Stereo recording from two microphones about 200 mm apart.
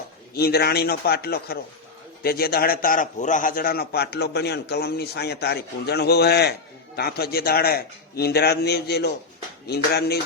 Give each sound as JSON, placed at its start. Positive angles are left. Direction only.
{"t": 0.3, "sound": "a man's voice", "side_deg": 50}